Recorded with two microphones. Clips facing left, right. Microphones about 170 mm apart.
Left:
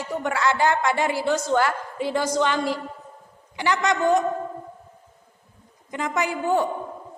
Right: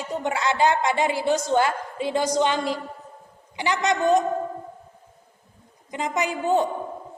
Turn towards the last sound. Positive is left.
turn(degrees=-20)  # may be behind; listen again after turning